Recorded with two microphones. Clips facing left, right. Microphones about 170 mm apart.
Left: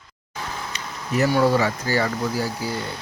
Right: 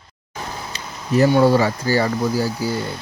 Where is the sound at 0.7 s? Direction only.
30° right (ahead or behind).